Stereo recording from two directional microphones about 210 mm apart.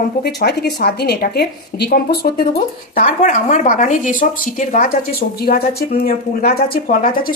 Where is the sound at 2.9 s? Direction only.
35° left (ahead or behind).